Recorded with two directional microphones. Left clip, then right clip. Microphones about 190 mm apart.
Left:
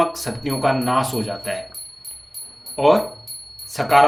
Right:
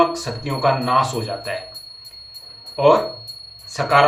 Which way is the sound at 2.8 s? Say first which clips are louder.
Right 1 dB; 55° left (ahead or behind).